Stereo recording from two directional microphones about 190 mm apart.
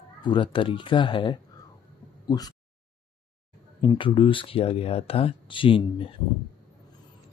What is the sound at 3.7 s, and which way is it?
Speech, 25° left (ahead or behind).